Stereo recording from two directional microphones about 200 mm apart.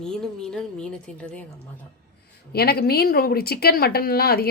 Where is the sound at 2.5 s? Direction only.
50° left (ahead or behind).